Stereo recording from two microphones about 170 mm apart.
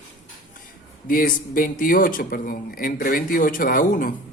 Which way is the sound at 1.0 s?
55° left (ahead or behind).